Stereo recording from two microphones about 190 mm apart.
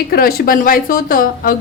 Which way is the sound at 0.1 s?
50° left (ahead or behind).